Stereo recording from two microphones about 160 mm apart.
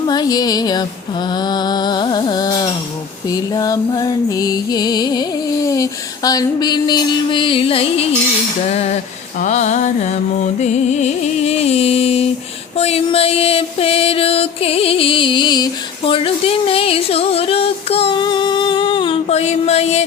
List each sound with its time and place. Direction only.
0.1 s music: 25° left (ahead or behind); by 20.1 s 40° left (ahead or behind)